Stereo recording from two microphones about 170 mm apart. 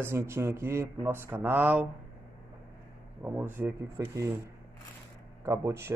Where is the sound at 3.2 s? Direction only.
10° right (ahead or behind).